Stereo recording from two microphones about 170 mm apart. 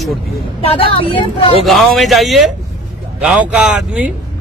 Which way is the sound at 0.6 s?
35° left (ahead or behind).